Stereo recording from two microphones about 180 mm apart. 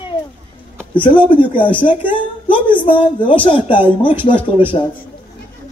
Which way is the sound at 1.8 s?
30° left (ahead or behind).